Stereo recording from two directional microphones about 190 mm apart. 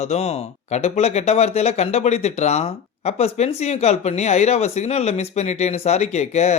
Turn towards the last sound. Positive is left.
turn(degrees=35)  # may be behind; listen again after turning